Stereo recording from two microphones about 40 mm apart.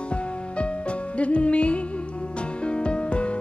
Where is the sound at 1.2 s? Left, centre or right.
Left.